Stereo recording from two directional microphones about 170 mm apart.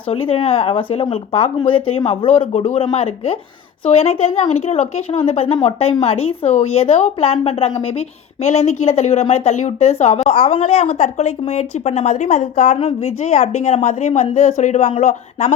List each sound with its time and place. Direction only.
0.1 s speech: 30° left (ahead or behind); by 15.5 s 50° left (ahead or behind)